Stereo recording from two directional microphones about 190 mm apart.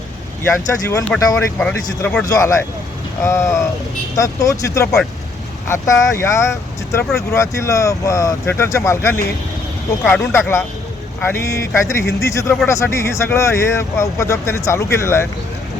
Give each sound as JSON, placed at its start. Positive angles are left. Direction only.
{"t": 0.4, "sound": "speech", "side_deg": 15}